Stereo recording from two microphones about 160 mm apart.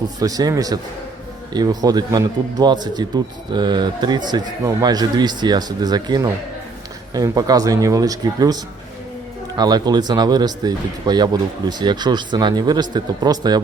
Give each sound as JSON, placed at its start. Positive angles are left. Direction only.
{"t": 0.2, "sound": "speech", "side_deg": -25}